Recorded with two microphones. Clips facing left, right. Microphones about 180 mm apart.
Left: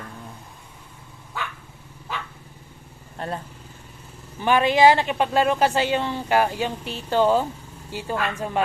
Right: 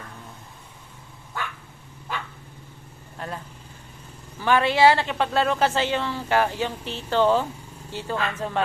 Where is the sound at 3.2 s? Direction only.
30° left (ahead or behind).